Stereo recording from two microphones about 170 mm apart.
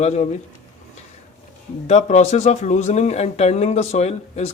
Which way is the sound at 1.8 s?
40° left (ahead or behind).